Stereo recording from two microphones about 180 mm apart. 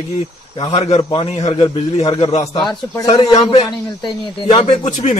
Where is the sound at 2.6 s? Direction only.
20° left (ahead or behind).